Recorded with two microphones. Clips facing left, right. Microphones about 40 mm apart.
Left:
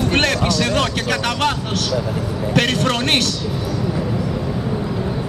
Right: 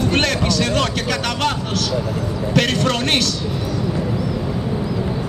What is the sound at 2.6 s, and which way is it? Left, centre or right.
Speech, centre.